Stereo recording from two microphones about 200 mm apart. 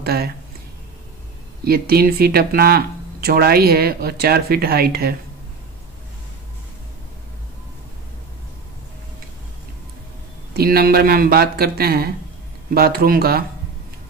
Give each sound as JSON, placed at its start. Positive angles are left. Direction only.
{"t": 0.0, "sound": "speech", "side_deg": -50}
{"t": 1.6, "sound": "speech", "side_deg": -50}
{"t": 10.5, "sound": "speech", "side_deg": -50}